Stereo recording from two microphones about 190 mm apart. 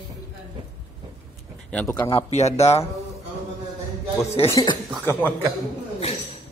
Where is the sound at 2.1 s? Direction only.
35° left (ahead or behind).